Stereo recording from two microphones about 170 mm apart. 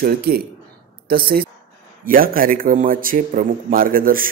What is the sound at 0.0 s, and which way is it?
A man's voice, 65° right (ahead or behind).